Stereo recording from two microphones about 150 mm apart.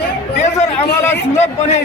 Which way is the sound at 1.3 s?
50° left (ahead or behind).